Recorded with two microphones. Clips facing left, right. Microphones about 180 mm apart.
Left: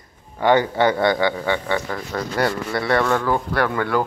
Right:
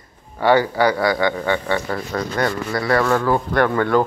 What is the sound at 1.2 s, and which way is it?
Speech, 10° left (ahead or behind).